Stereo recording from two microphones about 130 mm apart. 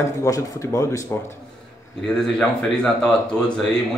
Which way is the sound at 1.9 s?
5° left (ahead or behind).